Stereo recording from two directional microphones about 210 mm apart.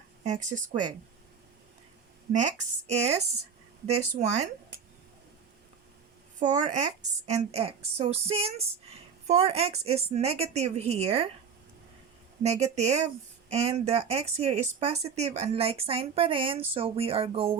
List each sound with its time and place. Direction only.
0.3 s speech: 35° right (ahead or behind)
2.3 s speech: 35° right (ahead or behind)
6.4 s speech: 35° right (ahead or behind)
12.4 s speech: 30° right (ahead or behind)